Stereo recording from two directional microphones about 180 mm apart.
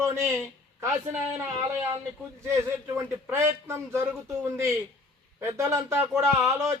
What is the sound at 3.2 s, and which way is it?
Speech, 15° right (ahead or behind).